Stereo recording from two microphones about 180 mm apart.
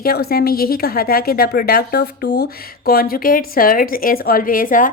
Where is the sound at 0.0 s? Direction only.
60° left (ahead or behind).